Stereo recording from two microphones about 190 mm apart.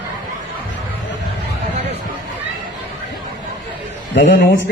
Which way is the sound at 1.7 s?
65° right (ahead or behind).